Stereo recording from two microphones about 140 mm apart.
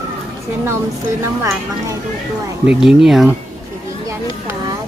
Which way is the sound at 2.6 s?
5° right (ahead or behind).